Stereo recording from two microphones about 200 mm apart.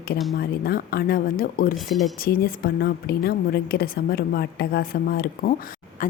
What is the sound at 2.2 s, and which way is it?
A woman's voice, 50° left (ahead or behind).